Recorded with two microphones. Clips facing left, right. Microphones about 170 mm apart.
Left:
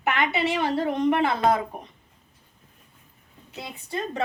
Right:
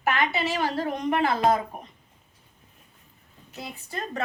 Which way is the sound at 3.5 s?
25° left (ahead or behind).